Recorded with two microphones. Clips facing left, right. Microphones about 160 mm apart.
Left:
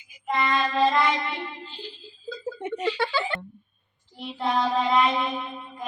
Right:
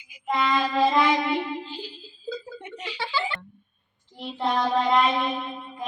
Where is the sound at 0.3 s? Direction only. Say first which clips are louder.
Right 1 dB; 10° right (ahead or behind).